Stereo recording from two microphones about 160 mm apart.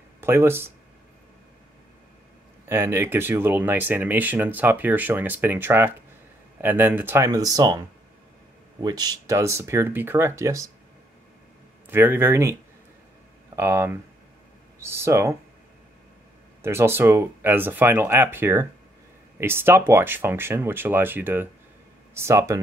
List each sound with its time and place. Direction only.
0.2 s speech: 15° right (ahead or behind)
2.6 s speech: 15° right (ahead or behind)
7.2 s speech: 20° right (ahead or behind)
8.8 s speech: 25° right (ahead or behind)
11.9 s speech: 15° right (ahead or behind)
13.6 s speech: 15° right (ahead or behind)
16.6 s speech: 15° right (ahead or behind)